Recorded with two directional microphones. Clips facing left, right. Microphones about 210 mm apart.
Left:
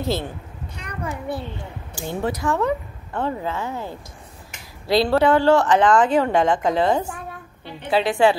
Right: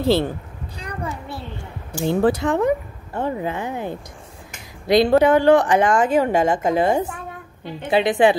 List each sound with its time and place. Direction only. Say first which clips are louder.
0.0 s speech: right 7 dB; 30° right (ahead or behind)
2.0 s speech: right 7 dB; 30° right (ahead or behind)
2.4 s a woman's voice: right 3 dB; 15° right (ahead or behind)